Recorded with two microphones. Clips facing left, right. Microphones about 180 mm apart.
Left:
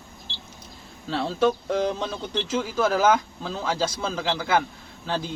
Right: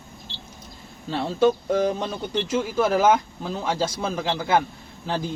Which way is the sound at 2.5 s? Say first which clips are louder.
Right 2 dB; 20° right (ahead or behind).